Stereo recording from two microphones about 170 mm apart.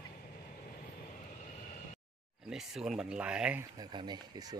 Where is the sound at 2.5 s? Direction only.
5° right (ahead or behind).